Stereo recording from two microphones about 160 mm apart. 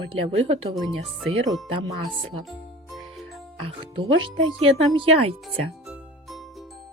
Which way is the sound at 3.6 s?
35° right (ahead or behind).